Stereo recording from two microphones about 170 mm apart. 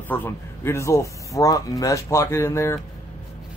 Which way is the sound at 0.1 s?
15° left (ahead or behind).